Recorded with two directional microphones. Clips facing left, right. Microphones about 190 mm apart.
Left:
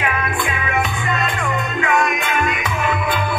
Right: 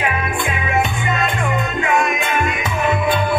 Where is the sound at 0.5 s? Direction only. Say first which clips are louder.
Right 2 dB; 25° right (ahead or behind).